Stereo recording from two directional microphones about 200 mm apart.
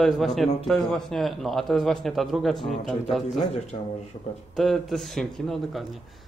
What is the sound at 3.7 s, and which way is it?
Speech, 30° left (ahead or behind).